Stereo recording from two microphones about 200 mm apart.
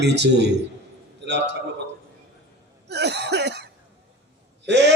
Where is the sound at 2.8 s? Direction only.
55° right (ahead or behind).